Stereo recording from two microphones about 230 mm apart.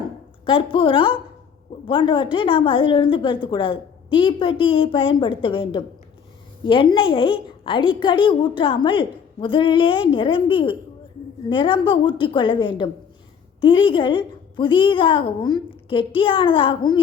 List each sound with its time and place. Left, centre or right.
0.4 s a woman's voice: left